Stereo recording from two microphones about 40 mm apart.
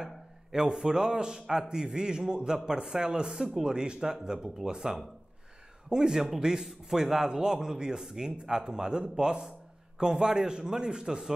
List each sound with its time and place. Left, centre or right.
0.0 s a man's voice: centre